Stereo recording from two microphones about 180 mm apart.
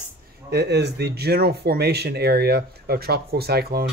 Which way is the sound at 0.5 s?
65° right (ahead or behind).